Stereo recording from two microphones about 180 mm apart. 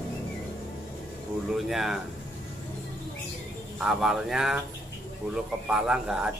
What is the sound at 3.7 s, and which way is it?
Speech, centre (ahead or behind).